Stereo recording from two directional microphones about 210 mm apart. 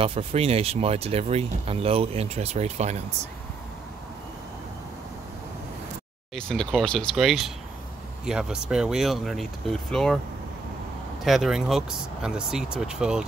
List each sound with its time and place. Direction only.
0.0 s speech: 30° right (ahead or behind)
6.3 s speech: centre (ahead or behind)
11.2 s speech: centre (ahead or behind)